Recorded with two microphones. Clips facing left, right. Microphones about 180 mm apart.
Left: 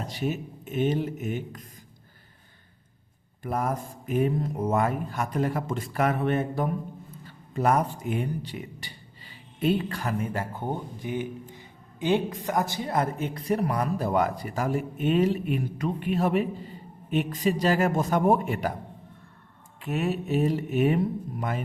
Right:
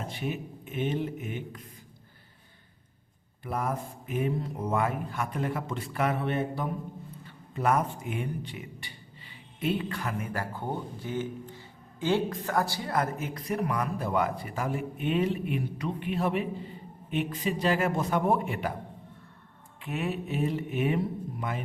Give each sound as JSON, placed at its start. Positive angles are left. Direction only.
{"t": 0.0, "sound": "speech", "side_deg": 40}
{"t": 3.4, "sound": "speech", "side_deg": 45}
{"t": 19.8, "sound": "speech", "side_deg": 40}